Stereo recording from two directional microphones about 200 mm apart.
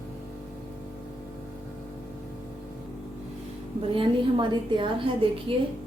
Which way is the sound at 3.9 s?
25° right (ahead or behind).